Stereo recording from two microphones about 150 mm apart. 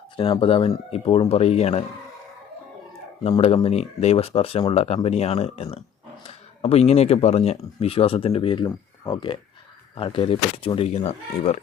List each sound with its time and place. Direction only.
0.2 s speech: 35° left (ahead or behind)
3.2 s speech: 40° left (ahead or behind)